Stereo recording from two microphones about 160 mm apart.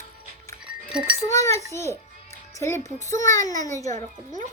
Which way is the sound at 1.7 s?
15° left (ahead or behind).